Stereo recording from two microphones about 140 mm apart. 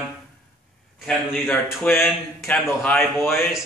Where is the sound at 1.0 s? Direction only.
10° left (ahead or behind).